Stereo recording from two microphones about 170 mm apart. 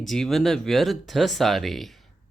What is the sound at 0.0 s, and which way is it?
Speech, centre (ahead or behind).